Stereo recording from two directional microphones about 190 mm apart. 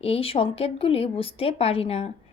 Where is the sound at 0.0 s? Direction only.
30° left (ahead or behind).